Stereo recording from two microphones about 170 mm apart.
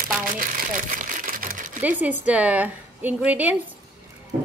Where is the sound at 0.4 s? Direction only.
55° right (ahead or behind).